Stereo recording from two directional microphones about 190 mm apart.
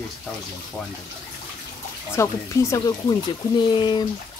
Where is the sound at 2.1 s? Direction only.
15° left (ahead or behind).